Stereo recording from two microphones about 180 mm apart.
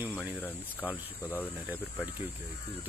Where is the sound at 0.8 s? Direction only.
10° right (ahead or behind).